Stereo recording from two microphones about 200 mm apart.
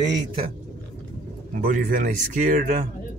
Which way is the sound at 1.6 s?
45° right (ahead or behind).